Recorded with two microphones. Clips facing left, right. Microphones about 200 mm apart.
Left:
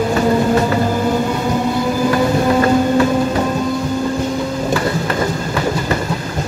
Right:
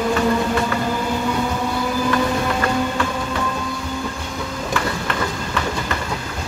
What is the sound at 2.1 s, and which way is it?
Train, 35° left (ahead or behind).